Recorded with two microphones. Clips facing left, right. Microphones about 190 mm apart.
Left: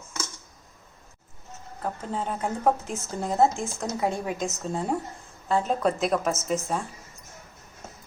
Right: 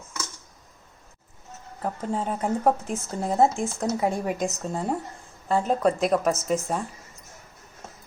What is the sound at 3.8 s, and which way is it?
A woman's voice, 5° right (ahead or behind).